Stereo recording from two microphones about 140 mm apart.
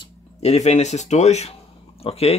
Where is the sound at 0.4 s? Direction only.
55° left (ahead or behind).